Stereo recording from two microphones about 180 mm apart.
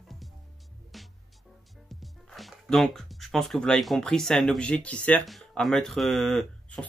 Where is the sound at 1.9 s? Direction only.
Centre (ahead or behind).